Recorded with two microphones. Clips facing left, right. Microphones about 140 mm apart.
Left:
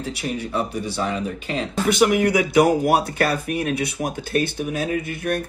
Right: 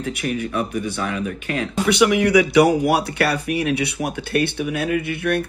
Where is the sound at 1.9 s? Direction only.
45° left (ahead or behind).